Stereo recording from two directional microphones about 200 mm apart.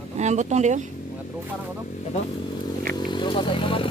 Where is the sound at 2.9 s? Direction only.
20° left (ahead or behind).